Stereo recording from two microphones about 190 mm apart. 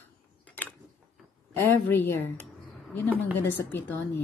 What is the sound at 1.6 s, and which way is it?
Speech, 10° left (ahead or behind).